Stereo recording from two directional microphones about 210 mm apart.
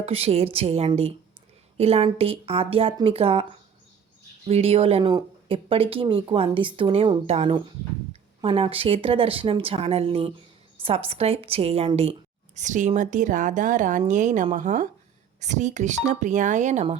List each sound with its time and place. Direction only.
0.0 s speech: 30° right (ahead or behind)
4.4 s speech: 30° right (ahead or behind)